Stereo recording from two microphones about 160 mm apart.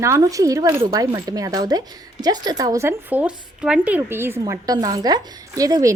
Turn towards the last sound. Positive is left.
turn(degrees=-20)  # may be behind; listen again after turning